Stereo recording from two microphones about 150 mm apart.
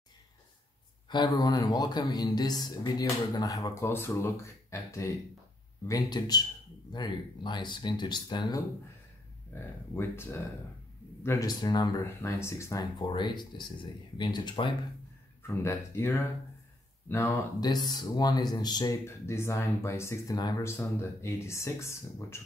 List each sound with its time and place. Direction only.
1.1 s speech: 30° left (ahead or behind)
9.5 s speech: 15° left (ahead or behind)
12.0 s speech: 15° left (ahead or behind)
15.4 s speech: 15° left (ahead or behind)